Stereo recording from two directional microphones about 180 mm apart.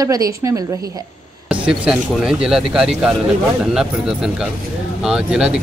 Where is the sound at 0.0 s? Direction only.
20° right (ahead or behind).